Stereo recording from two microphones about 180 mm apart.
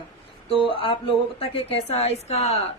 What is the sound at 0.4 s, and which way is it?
A woman's voice, 30° left (ahead or behind).